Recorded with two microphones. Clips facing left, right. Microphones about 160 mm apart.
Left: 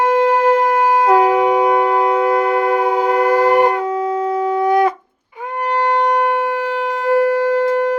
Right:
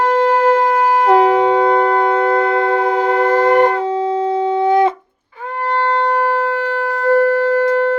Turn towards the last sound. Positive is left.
turn(degrees=15)  # may be behind; listen again after turning